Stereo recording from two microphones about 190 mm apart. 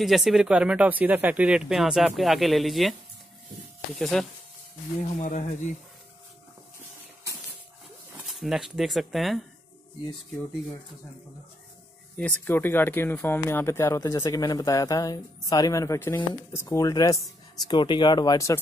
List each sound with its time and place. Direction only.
0.0 s speech: centre (ahead or behind)
5.2 s speech: 45° left (ahead or behind)
8.3 s speech: centre (ahead or behind)
12.2 s speech: 10° left (ahead or behind)